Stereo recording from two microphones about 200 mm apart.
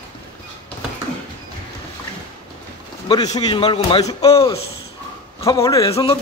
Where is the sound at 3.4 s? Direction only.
20° left (ahead or behind).